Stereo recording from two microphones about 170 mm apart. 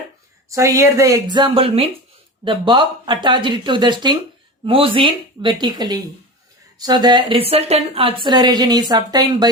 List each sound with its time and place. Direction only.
0.5 s speech: 20° right (ahead or behind)